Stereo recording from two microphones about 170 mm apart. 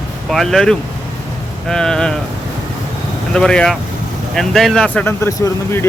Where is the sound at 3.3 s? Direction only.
5° left (ahead or behind).